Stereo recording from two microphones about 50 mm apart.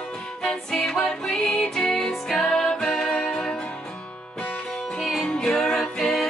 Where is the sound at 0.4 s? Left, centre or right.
Centre.